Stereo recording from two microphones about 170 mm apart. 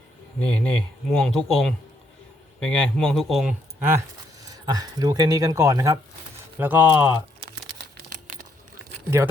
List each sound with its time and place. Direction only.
0.3 s speech: 5° left (ahead or behind)
3.8 s speech: 15° right (ahead or behind)